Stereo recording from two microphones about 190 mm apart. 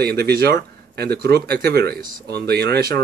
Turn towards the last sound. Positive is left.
turn(degrees=-55)  # may be behind; listen again after turning